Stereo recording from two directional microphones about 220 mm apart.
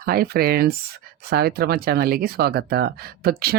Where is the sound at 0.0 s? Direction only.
45° right (ahead or behind).